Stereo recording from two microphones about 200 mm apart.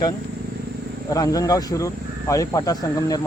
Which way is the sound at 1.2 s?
15° left (ahead or behind).